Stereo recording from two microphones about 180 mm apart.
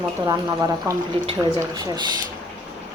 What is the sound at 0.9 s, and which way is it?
Speech, 20° right (ahead or behind).